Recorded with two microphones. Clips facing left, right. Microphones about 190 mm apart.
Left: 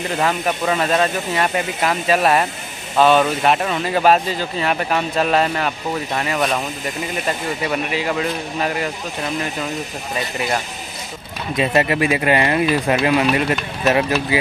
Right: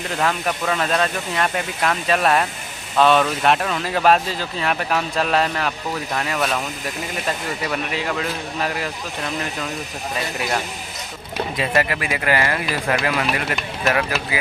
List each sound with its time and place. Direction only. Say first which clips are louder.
0.2 s speech: left 2 dB; 5° left (ahead or behind)
11.5 s speech: left 5 dB; 20° left (ahead or behind)